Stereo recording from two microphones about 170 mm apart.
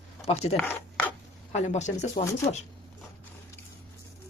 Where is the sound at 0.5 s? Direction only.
10° left (ahead or behind).